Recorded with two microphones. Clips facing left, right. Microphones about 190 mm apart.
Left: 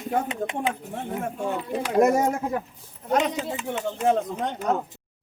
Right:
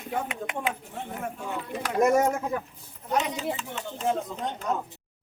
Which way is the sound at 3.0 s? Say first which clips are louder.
Left 4 dB; 60° left (ahead or behind).